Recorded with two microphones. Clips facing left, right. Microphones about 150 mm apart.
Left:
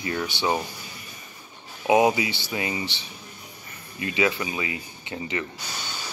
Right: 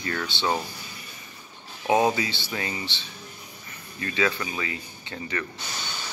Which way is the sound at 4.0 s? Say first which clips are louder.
Left 2 dB; 15° left (ahead or behind).